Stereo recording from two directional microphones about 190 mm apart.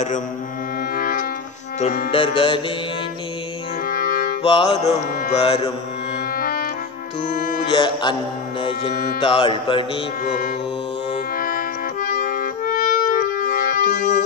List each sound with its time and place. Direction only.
0.9 s music: 50° left (ahead or behind)
2.1 s music: 30° left (ahead or behind)
3.8 s music: 50° left (ahead or behind)
4.4 s music: 25° left (ahead or behind)
6.3 s music: 50° left (ahead or behind)
7.7 s music: 25° left (ahead or behind)
11.3 s music: 50° left (ahead or behind)